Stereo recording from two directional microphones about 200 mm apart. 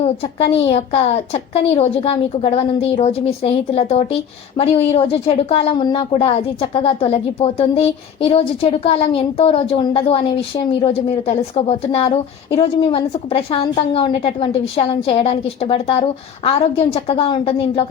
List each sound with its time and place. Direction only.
0.0 s a woman's voice: 30° left (ahead or behind)